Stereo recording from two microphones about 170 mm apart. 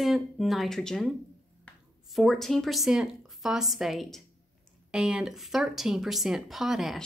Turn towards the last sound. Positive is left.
turn(degrees=0)  # may be behind; listen again after turning